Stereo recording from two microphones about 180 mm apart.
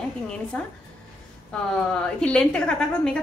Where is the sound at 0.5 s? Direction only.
5° left (ahead or behind).